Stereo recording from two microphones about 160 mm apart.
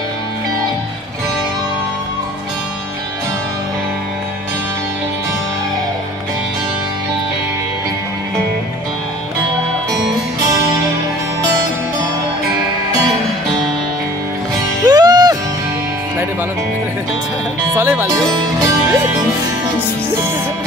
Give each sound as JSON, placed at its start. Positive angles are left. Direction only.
{"t": 10.4, "sound": "music", "side_deg": -20}
{"t": 14.9, "sound": "music", "side_deg": -25}
{"t": 17.7, "sound": "music", "side_deg": -15}